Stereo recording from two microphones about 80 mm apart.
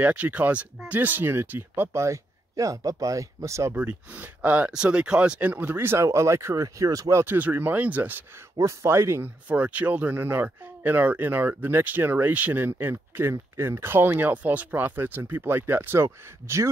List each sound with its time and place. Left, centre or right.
0.0 s speech: centre; by 3.7 s right
3.7 s speech: centre; by 7.3 s right
7.3 s speech: right
8.5 s speech: right
9.5 s speech: centre; by 16.7 s right